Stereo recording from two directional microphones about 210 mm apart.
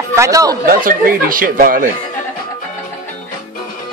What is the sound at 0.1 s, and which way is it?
Speech, 15° right (ahead or behind).